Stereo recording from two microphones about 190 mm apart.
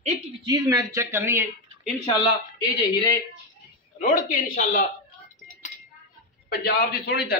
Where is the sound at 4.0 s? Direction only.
45° left (ahead or behind).